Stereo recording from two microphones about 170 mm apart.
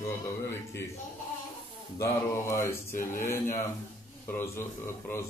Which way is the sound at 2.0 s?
15° left (ahead or behind).